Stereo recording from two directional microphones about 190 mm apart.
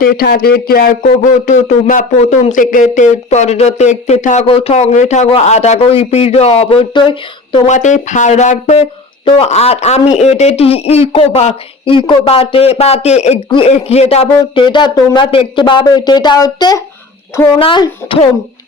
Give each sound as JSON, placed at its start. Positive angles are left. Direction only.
{"t": 0.0, "sound": "a man's voice", "side_deg": 50}